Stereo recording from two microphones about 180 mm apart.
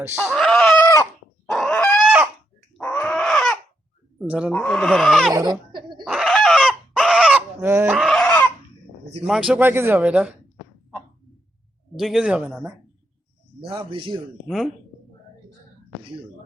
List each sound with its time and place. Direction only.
0.0 s speech: 10° right (ahead or behind)
0.3 s screaming: centre (ahead or behind)
1.5 s chicken: 5° left (ahead or behind)
2.7 s a sound: 5° left (ahead or behind)
4.3 s speech: 5° right (ahead or behind)
5.3 s a sound: 20° right (ahead or behind)
6.1 s fowl: centre (ahead or behind)
7.9 s fowl: centre (ahead or behind)
9.2 s speech: centre (ahead or behind)
11.9 s speech: centre (ahead or behind)
13.6 s a man's voice: 30° right (ahead or behind)
14.4 s speech: centre (ahead or behind)